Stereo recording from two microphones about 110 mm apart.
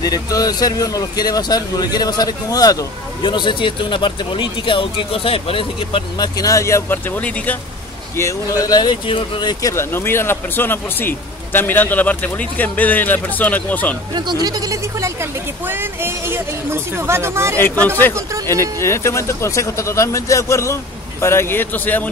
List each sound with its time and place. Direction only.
0.0 s speech: 35° left (ahead or behind)
3.2 s speech: 45° left (ahead or behind)
6.1 s speech: 35° left (ahead or behind); by 7.5 s 15° left (ahead or behind)
8.2 s speech: 30° left (ahead or behind); by 13.9 s 15° left (ahead or behind)
14.1 s a woman's voice: 40° right (ahead or behind); by 17.6 s 25° right (ahead or behind)
17.6 s speech: 15° left (ahead or behind)